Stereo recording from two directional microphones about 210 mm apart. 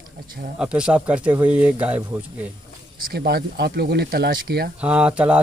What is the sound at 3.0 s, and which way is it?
Speech, 50° right (ahead or behind).